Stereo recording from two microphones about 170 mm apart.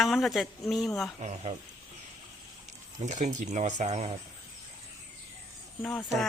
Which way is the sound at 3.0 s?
45° right (ahead or behind).